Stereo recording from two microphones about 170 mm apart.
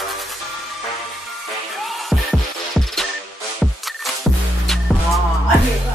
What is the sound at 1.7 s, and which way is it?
Music, centre (ahead or behind).